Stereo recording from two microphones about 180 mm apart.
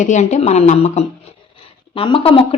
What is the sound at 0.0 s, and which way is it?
Speech, 40° left (ahead or behind).